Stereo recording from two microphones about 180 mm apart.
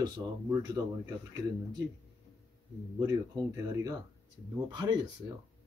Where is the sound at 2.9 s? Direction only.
20° right (ahead or behind).